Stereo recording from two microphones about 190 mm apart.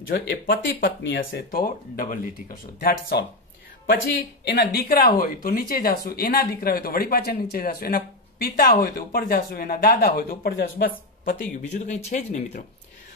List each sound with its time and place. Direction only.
0.1 s speech: 50° left (ahead or behind)
4.6 s speech: 50° left (ahead or behind)
11.2 s speech: 65° left (ahead or behind)
11.7 s speech: 35° left (ahead or behind)